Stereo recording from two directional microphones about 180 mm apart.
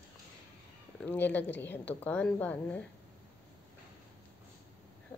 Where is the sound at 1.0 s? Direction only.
10° left (ahead or behind).